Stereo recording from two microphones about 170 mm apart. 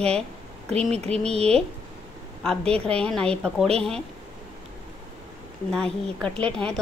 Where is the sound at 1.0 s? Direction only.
35° right (ahead or behind).